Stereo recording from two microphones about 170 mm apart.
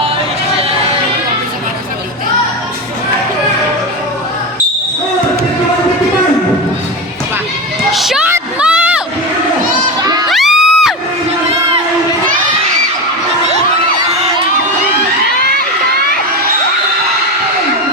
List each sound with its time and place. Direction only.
7.9 s a sound: centre (ahead or behind)
10.0 s children shouting: 25° right (ahead or behind)
10.2 s children shouting: centre (ahead or behind)